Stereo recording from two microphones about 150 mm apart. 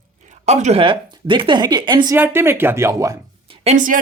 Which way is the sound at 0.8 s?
35° right (ahead or behind).